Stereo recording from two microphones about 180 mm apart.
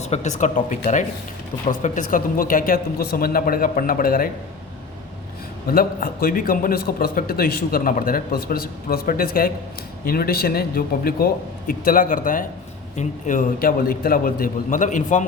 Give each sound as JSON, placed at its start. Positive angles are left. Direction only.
{"t": 0.0, "sound": "speech", "side_deg": 40}
{"t": 5.6, "sound": "a man's voice", "side_deg": 55}